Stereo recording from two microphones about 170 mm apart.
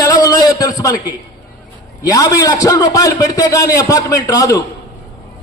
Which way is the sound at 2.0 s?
20° left (ahead or behind).